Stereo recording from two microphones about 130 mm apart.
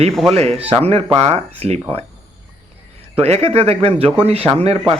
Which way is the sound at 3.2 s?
55° right (ahead or behind).